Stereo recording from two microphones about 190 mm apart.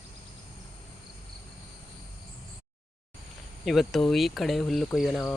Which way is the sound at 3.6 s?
Centre (ahead or behind).